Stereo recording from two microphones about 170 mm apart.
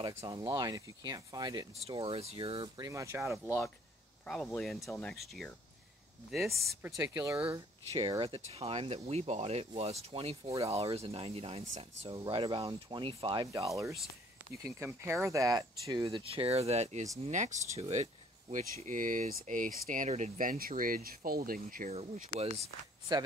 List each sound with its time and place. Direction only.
0.1 s speech: 20° right (ahead or behind)
3.4 s speech: 15° left (ahead or behind)
4.3 s speech: 5° left (ahead or behind)
6.5 s speech: 15° right (ahead or behind)
7.9 s speech: 30° right (ahead or behind); by 21.9 s 55° right (ahead or behind)
23.1 s speech: 25° right (ahead or behind)